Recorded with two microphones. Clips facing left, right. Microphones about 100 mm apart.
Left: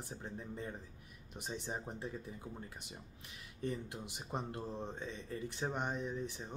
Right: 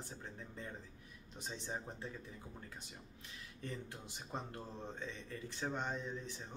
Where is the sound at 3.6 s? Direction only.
15° left (ahead or behind).